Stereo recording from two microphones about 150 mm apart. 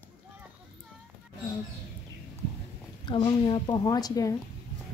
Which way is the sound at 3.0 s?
30° left (ahead or behind).